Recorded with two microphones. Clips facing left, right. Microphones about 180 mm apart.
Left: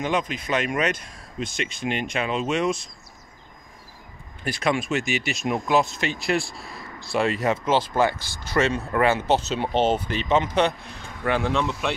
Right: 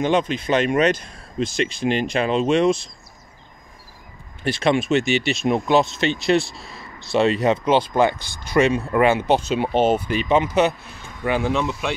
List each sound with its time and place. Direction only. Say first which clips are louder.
0.0 s speech: right 6 dB; 30° right (ahead or behind)
4.5 s speech: right 5 dB; 25° right (ahead or behind); by 11.9 s 5° right (ahead or behind)